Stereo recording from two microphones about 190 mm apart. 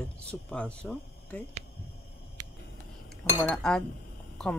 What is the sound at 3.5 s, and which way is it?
Speech, 5° left (ahead or behind).